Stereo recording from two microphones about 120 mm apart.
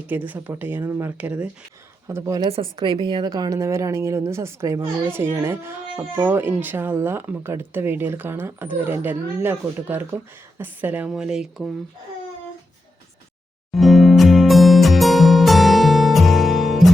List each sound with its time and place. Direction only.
0.1 s speech: 15° right (ahead or behind)
2.0 s a woman's voice: 25° right (ahead or behind)
2.5 s a woman's voice: 50° right (ahead or behind); by 11.7 s 5° right (ahead or behind)
13.7 s music: centre (ahead or behind)